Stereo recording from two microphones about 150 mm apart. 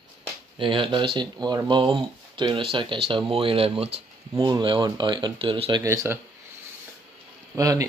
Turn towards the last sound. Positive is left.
turn(degrees=-25)  # may be behind; listen again after turning